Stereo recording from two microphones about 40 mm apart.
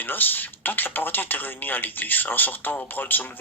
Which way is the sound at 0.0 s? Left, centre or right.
Left.